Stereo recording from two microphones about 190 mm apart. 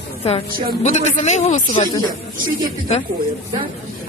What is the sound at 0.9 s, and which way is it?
Speech, 40° left (ahead or behind).